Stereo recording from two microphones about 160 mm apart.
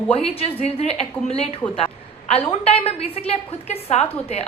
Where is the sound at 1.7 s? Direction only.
40° left (ahead or behind).